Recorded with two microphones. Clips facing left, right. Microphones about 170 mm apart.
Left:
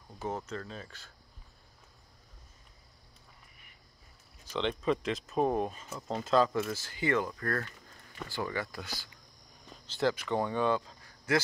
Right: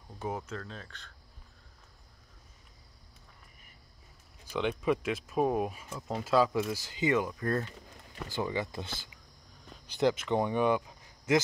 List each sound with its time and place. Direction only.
0.4 s speech: centre (ahead or behind)
4.5 s speech: 10° right (ahead or behind)